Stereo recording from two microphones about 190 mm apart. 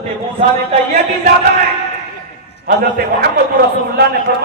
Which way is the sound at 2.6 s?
50° right (ahead or behind).